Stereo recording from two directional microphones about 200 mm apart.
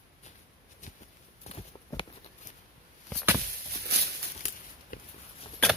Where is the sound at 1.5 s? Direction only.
35° left (ahead or behind).